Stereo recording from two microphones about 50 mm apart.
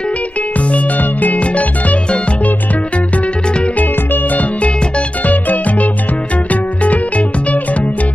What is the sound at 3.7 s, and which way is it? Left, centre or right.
Music, left.